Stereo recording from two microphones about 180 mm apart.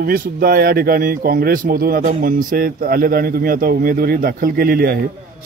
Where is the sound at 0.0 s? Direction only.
55° right (ahead or behind).